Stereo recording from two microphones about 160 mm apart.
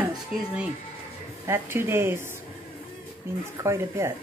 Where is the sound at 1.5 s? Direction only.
15° right (ahead or behind).